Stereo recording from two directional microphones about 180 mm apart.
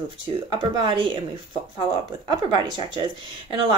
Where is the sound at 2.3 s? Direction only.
25° right (ahead or behind).